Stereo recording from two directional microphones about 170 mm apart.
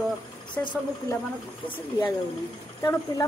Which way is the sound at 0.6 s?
15° left (ahead or behind).